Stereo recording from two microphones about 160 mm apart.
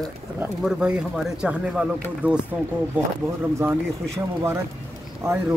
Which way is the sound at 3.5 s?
20° right (ahead or behind).